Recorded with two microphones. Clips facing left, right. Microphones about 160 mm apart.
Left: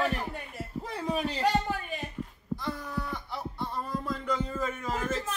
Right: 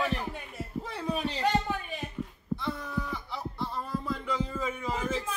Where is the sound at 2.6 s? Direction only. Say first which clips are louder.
Even; centre (ahead or behind).